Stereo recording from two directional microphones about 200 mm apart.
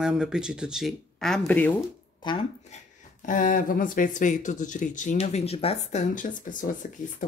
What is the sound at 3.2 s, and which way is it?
Speech, 40° left (ahead or behind).